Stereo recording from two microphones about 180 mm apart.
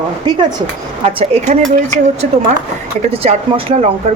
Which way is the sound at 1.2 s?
35° right (ahead or behind).